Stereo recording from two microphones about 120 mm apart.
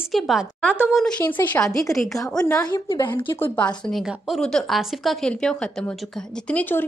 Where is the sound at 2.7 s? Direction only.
35° left (ahead or behind).